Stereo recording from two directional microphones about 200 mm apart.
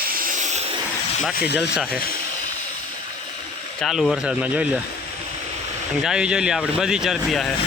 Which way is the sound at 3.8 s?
Centre (ahead or behind).